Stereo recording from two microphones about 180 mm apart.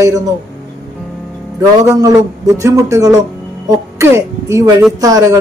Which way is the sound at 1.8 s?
20° right (ahead or behind).